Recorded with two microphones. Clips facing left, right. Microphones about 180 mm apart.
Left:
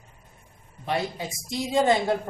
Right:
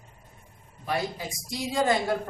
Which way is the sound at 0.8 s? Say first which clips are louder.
Left 2 dB; 25° left (ahead or behind).